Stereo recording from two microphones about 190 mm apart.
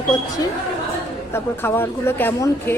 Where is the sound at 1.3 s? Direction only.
10° left (ahead or behind).